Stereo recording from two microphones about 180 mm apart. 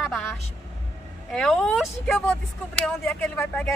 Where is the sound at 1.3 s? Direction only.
5° left (ahead or behind).